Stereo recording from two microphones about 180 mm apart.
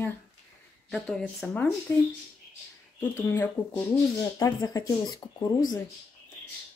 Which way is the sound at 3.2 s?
15° left (ahead or behind).